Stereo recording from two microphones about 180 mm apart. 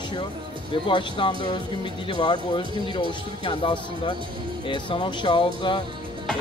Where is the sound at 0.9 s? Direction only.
30° left (ahead or behind).